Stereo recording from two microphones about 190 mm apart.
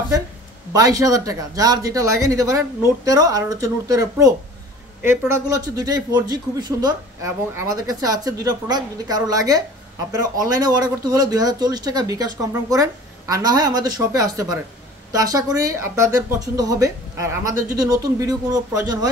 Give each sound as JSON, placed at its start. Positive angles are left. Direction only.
{"t": 0.7, "sound": "a man's voice", "side_deg": -20}